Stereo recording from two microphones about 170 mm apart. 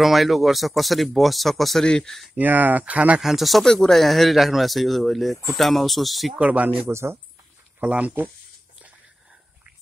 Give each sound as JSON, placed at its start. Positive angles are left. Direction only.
{"t": 0.0, "sound": "speech", "side_deg": 0}
{"t": 2.3, "sound": "speech", "side_deg": -10}